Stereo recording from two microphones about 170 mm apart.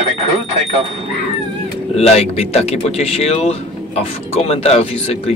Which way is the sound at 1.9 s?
35° left (ahead or behind).